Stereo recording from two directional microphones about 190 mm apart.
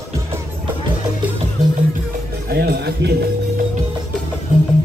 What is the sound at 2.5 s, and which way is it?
Music, 55° right (ahead or behind).